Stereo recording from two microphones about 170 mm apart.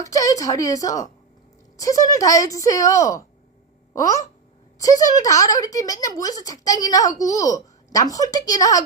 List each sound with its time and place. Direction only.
0.0 s speech: 20° left (ahead or behind)